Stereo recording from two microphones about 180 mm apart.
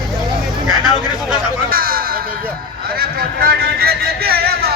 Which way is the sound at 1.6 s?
55° right (ahead or behind).